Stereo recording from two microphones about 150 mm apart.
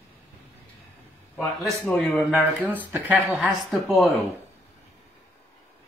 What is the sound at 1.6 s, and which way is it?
Speech, 10° left (ahead or behind).